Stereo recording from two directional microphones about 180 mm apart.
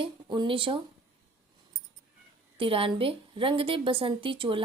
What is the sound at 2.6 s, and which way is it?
Speech, 30° right (ahead or behind).